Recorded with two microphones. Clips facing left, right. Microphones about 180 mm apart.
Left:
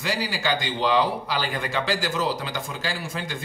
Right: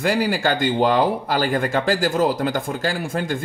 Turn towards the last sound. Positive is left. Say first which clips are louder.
# right 7 dB
turn(degrees=-50)  # may be behind; listen again after turning